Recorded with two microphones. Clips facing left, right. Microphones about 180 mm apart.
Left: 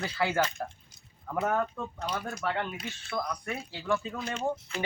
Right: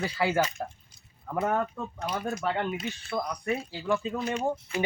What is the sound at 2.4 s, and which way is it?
A man's voice, 20° right (ahead or behind).